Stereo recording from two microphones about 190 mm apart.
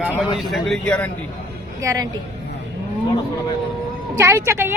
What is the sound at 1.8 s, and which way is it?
Speech, 20° right (ahead or behind).